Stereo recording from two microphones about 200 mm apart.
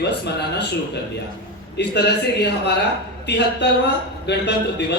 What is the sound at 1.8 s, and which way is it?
A man's voice, 55° left (ahead or behind).